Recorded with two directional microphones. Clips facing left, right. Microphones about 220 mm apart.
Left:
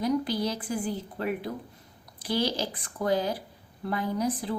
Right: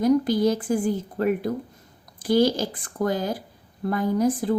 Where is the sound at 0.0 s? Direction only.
45° right (ahead or behind).